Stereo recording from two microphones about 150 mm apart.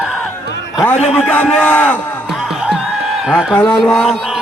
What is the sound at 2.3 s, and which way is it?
Music, 5° right (ahead or behind).